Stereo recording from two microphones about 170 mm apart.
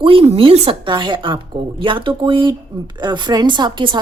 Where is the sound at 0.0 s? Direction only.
30° right (ahead or behind).